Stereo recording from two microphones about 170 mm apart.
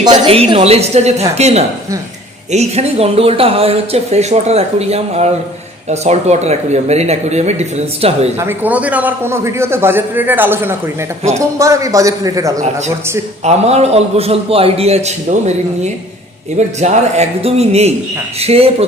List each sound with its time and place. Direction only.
0.0 s speech: 30° right (ahead or behind)
8.4 s a man's voice: 10° right (ahead or behind)
13.4 s speech: 40° right (ahead or behind)